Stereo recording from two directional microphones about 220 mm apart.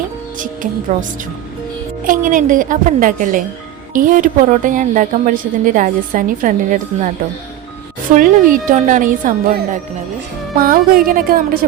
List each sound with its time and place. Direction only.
0.3 s speech: 35° right (ahead or behind)
2.0 s a woman's voice: 35° right (ahead or behind)
8.1 s a woman's voice: 40° right (ahead or behind)